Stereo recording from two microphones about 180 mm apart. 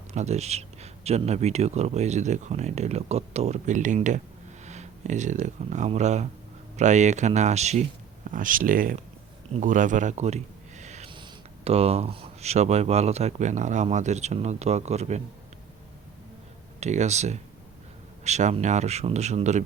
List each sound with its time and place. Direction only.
0.1 s speech: 40° right (ahead or behind)
16.8 s speech: 40° right (ahead or behind)